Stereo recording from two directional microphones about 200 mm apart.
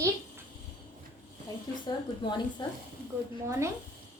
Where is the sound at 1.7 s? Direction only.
20° left (ahead or behind).